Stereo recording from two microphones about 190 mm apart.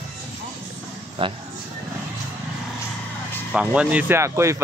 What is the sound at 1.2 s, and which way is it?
Speech, 30° right (ahead or behind).